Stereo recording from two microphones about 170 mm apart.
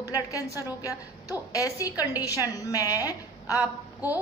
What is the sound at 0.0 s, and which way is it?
A woman's voice, 20° left (ahead or behind).